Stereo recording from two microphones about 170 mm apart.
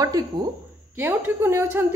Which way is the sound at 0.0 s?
20° right (ahead or behind).